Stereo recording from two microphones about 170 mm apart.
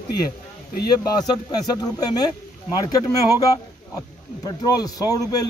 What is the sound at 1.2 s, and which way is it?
Speech, 25° left (ahead or behind).